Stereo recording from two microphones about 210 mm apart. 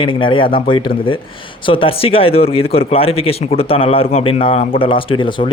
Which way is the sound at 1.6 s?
25° left (ahead or behind).